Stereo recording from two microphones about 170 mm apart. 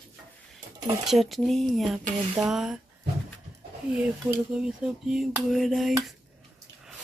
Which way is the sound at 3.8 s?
5° right (ahead or behind).